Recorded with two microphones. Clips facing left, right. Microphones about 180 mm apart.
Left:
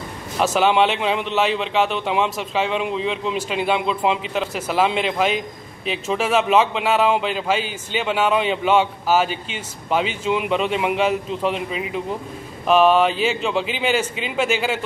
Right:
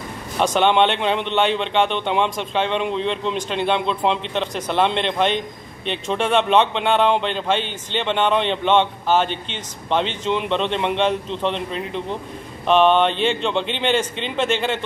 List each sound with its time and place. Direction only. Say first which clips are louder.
0.4 s speech: even; 5° left (ahead or behind)